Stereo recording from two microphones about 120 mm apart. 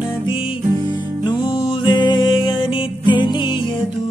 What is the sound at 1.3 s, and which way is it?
Music, 35° left (ahead or behind).